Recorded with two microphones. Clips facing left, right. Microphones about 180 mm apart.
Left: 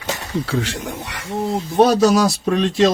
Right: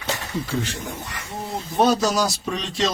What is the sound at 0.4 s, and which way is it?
Speech, 90° left.